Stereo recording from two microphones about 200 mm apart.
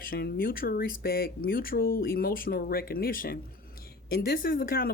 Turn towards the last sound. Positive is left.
turn(degrees=45)  # may be behind; listen again after turning